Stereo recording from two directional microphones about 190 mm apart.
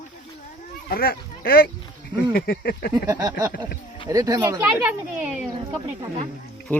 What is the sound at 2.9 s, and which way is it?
A child's voice, 20° right (ahead or behind).